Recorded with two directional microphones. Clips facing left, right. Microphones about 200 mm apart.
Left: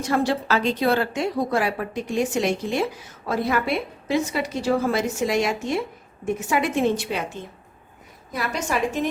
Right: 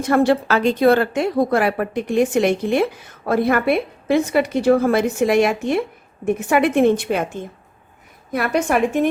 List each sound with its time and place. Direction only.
0.0 s a woman's voice: 55° right (ahead or behind)